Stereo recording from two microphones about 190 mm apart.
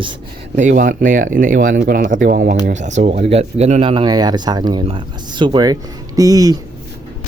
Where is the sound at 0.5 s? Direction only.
40° right (ahead or behind); by 6.6 s 20° right (ahead or behind).